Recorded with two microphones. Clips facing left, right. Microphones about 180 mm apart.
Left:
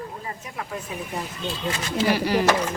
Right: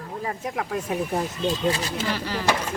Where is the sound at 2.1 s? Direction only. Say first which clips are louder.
Left 10 dB; 15° left (ahead or behind).